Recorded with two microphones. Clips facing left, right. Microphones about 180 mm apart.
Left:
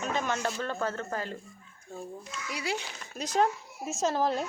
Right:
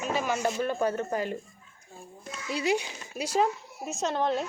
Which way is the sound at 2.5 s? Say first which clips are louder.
Right 7 dB; 25° right (ahead or behind).